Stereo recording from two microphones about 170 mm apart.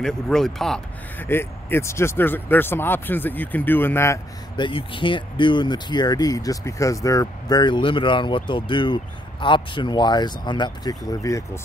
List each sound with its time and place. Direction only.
0.0 s speech: 5° left (ahead or behind)
4.6 s speech: 30° left (ahead or behind)